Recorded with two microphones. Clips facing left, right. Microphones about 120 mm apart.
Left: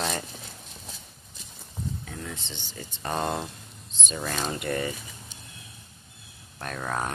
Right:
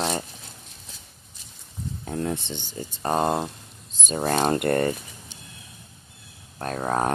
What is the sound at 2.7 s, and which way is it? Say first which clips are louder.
Speech: right 6 dB; 35° right (ahead or behind).